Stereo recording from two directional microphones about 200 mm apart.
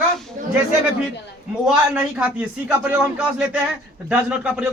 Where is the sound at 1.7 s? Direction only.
5° right (ahead or behind).